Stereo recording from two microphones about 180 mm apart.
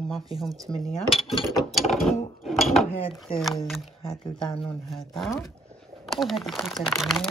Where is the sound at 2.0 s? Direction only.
Centre (ahead or behind).